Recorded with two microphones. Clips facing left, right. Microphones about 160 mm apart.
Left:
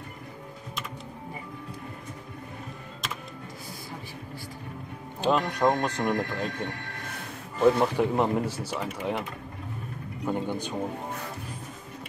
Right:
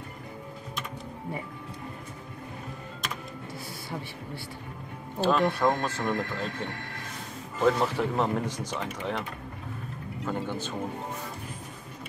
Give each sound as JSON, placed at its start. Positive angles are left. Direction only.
{"t": 5.2, "sound": "speech", "side_deg": 15}
{"t": 10.2, "sound": "speech", "side_deg": 15}